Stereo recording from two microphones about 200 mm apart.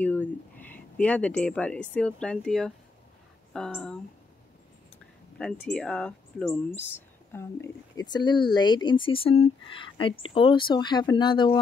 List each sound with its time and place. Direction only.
0.0 s a sound: 10° left (ahead or behind)
0.7 s speech: 5° left (ahead or behind)
5.4 s speech: 5° left (ahead or behind); by 11.6 s 25° left (ahead or behind)